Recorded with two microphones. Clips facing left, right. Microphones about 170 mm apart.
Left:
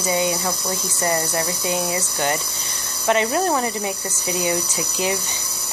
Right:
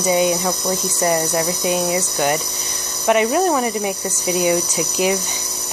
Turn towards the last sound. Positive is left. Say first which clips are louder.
# right 5 dB
turn(degrees=-20)  # may be behind; listen again after turning